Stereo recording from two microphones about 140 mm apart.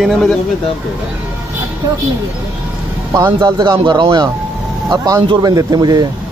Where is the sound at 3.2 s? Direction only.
25° right (ahead or behind).